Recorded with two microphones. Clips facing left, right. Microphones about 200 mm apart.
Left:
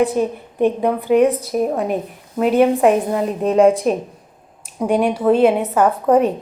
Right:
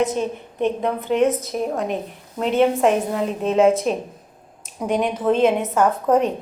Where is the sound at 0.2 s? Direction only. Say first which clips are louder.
Left 5 dB; 10° left (ahead or behind).